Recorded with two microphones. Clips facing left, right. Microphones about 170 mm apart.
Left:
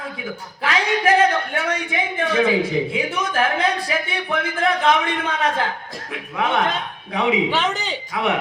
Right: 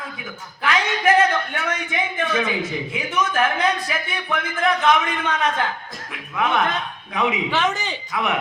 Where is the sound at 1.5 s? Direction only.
30° left (ahead or behind).